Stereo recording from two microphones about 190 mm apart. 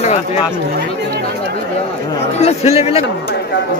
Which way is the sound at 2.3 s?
35° left (ahead or behind).